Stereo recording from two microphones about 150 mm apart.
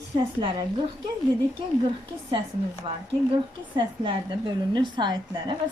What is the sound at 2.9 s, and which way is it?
A woman's voice, 40° right (ahead or behind).